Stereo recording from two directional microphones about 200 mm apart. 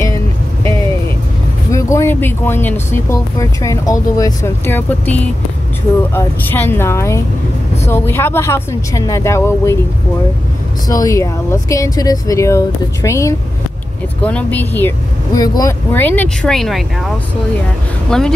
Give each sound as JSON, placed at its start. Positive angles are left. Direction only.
{"t": 1.7, "sound": "speech", "side_deg": 15}
{"t": 10.9, "sound": "speech", "side_deg": 15}
{"t": 18.1, "sound": "speech", "side_deg": 5}